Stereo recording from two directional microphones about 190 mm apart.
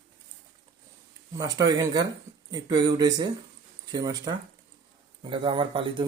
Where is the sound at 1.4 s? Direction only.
20° right (ahead or behind).